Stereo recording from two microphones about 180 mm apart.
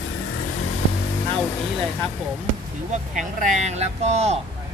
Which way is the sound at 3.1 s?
40° right (ahead or behind).